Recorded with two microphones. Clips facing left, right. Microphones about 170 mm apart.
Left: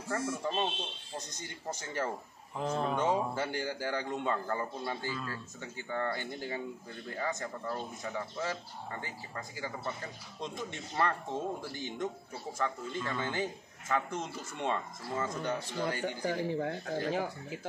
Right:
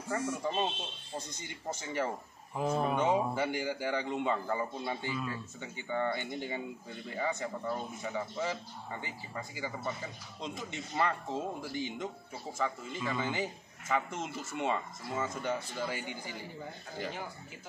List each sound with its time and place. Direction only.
0.1 s a man's voice: 10° right (ahead or behind)
2.5 s a man's voice: 10° right (ahead or behind)
10.7 s a man's voice: 10° right (ahead or behind)
16.2 s speech: 75° left (ahead or behind)